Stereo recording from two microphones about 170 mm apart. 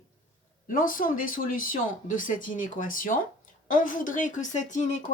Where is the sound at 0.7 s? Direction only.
55° left (ahead or behind).